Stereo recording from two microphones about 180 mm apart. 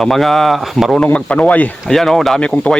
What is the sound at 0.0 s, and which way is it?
Speech, centre (ahead or behind).